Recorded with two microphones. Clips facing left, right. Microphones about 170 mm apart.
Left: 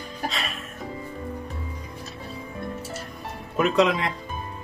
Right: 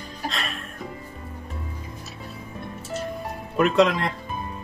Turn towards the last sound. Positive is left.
turn(degrees=0)  # may be behind; listen again after turning